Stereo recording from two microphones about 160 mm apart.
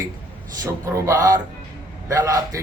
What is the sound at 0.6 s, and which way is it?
Speech, 20° right (ahead or behind).